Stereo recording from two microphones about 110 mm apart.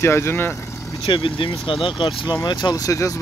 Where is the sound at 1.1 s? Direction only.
50° left (ahead or behind).